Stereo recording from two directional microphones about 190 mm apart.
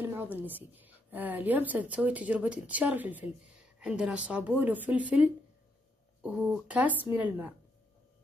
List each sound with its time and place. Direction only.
0.0 s a woman's voice: 10° right (ahead or behind)